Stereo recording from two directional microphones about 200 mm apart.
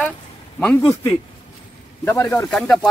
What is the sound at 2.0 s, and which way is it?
Speech, 10° left (ahead or behind).